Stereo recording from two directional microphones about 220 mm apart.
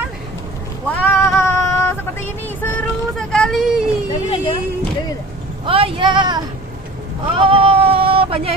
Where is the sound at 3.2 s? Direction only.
5° left (ahead or behind).